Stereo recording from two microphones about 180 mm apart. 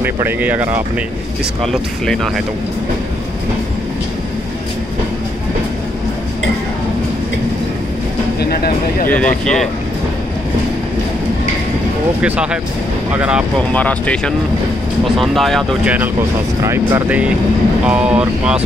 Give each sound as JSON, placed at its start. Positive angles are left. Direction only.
{"t": 0.0, "sound": "speech", "side_deg": -10}
{"t": 1.6, "sound": "speech", "side_deg": 0}
{"t": 8.4, "sound": "speech", "side_deg": 60}
{"t": 9.1, "sound": "speech", "side_deg": 5}
{"t": 12.2, "sound": "speech", "side_deg": -5}
{"t": 13.6, "sound": "speech", "side_deg": 5}